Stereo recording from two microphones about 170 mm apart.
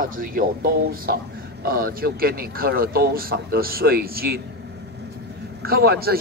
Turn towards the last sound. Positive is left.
turn(degrees=-65)  # may be behind; listen again after turning